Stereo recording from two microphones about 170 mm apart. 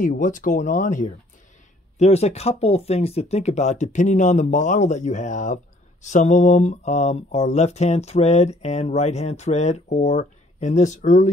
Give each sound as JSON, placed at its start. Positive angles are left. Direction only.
{"t": 0.0, "sound": "speech", "side_deg": 50}